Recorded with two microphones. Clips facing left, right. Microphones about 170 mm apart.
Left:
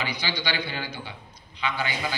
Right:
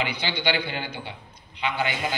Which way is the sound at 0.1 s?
55° right (ahead or behind).